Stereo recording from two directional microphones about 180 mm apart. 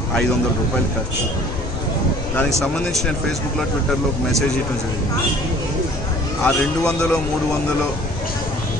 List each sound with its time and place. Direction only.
6.4 s speech: 5° left (ahead or behind)